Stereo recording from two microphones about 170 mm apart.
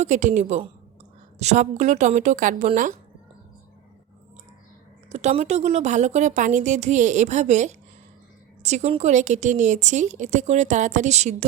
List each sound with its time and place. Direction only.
0.0 s a woman's voice: 45° right (ahead or behind)
5.0 s a woman's voice: 40° right (ahead or behind)